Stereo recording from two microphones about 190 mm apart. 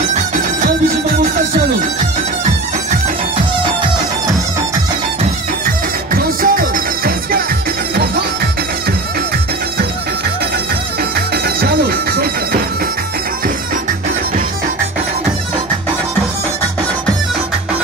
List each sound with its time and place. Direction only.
6.1 s music: 50° right (ahead or behind)
11.1 s music: 55° right (ahead or behind)